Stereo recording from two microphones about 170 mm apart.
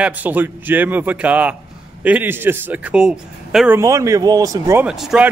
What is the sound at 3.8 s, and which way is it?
Speech, 20° right (ahead or behind).